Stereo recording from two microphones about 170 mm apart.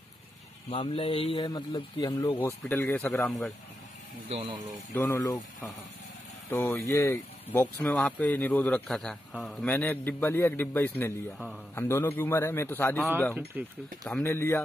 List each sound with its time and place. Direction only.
0.7 s speech: 35° left (ahead or behind)
2.3 s speech: 10° left (ahead or behind)
4.3 s speech: 30° right (ahead or behind)
4.9 s speech: 15° left (ahead or behind)
6.5 s speech: 15° left (ahead or behind)
13.5 s speech: 10° right (ahead or behind)
14.0 s speech: 10° left (ahead or behind)